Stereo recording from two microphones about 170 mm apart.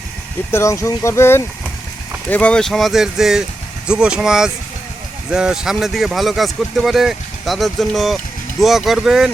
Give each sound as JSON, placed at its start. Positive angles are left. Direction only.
{"t": 0.5, "sound": "speech", "side_deg": 15}